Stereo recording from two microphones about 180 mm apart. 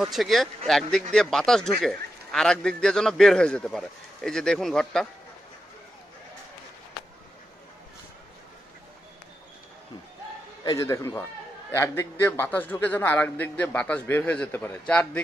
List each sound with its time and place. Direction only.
0.0 s a man's voice: centre (ahead or behind)
10.6 s a man's voice: 20° left (ahead or behind)